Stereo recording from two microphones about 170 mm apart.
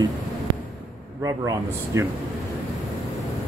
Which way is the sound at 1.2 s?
20° right (ahead or behind).